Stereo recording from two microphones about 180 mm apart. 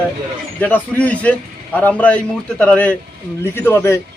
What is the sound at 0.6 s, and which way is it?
A man's voice, 10° left (ahead or behind).